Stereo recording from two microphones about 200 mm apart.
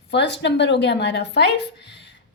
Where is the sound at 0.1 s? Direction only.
60° left (ahead or behind).